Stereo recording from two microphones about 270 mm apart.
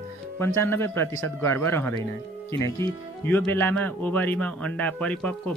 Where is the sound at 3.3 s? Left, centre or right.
Centre.